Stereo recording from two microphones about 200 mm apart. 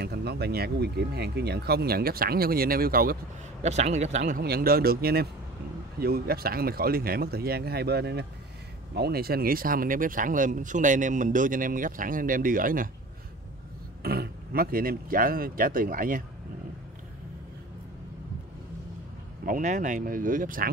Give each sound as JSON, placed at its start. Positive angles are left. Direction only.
{"t": 0.0, "sound": "speech", "side_deg": -55}
{"t": 3.6, "sound": "speech", "side_deg": -35}
{"t": 14.0, "sound": "speech", "side_deg": -50}
{"t": 19.4, "sound": "speech", "side_deg": -40}